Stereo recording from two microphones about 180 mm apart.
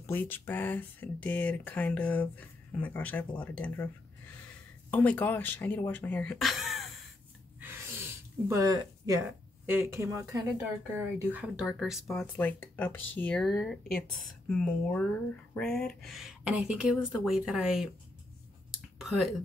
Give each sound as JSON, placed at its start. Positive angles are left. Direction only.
{"t": 0.0, "sound": "speech", "side_deg": 10}
{"t": 4.9, "sound": "speech", "side_deg": 10}
{"t": 7.6, "sound": "a sound", "side_deg": -15}
{"t": 9.7, "sound": "speech", "side_deg": -15}
{"t": 12.2, "sound": "speech", "side_deg": 10}
{"t": 18.7, "sound": "a sound", "side_deg": 0}